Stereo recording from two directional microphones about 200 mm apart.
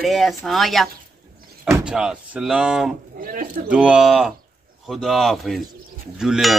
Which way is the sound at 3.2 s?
40° right (ahead or behind).